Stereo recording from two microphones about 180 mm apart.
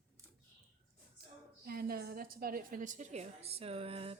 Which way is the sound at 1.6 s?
55° right (ahead or behind).